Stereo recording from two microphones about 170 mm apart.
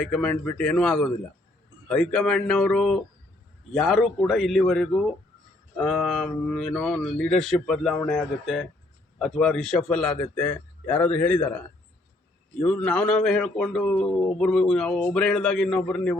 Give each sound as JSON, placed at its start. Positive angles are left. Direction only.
{"t": 0.0, "sound": "a man's voice", "side_deg": 5}
{"t": 12.5, "sound": "a man's voice", "side_deg": 5}